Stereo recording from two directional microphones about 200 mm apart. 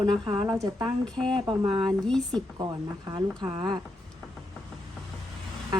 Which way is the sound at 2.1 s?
5° left (ahead or behind).